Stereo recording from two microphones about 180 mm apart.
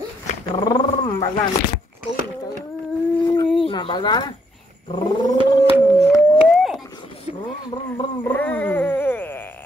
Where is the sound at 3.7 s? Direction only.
25° left (ahead or behind).